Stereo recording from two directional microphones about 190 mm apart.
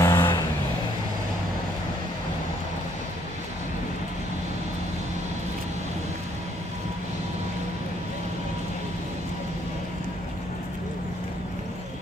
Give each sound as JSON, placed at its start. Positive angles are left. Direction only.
{"t": 0.0, "sound": "vehicle", "side_deg": 20}